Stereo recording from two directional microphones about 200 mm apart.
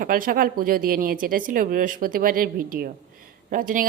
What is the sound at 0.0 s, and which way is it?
A woman's voice, 45° right (ahead or behind).